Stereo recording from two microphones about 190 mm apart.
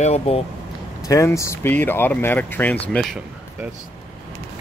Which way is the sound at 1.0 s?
15° left (ahead or behind).